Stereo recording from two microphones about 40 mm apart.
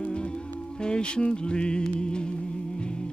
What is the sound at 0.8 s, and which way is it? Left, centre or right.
Music, left.